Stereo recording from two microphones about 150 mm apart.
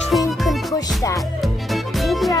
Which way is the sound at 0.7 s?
25° left (ahead or behind).